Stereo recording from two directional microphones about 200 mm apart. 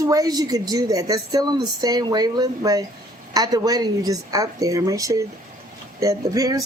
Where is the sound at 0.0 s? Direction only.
15° right (ahead or behind).